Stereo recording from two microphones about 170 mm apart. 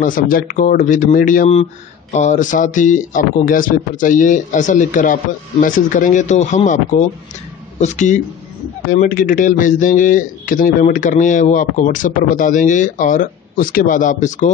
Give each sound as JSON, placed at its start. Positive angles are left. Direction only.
{"t": 0.0, "sound": "speech", "side_deg": 55}